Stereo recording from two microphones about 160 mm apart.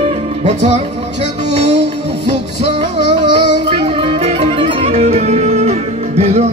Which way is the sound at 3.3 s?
35° right (ahead or behind).